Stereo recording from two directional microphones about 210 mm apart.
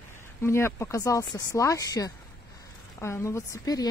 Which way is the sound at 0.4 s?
10° left (ahead or behind).